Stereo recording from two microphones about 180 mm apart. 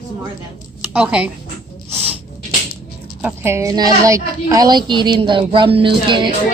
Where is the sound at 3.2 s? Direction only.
15° right (ahead or behind).